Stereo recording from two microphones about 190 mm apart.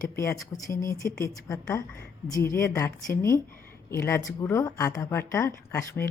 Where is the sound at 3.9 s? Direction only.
15° left (ahead or behind).